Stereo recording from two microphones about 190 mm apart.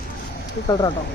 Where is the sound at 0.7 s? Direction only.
20° left (ahead or behind).